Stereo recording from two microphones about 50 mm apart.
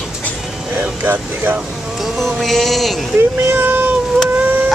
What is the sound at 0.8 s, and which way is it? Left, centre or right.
Speech, right.